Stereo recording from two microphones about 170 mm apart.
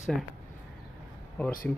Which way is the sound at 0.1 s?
5° left (ahead or behind).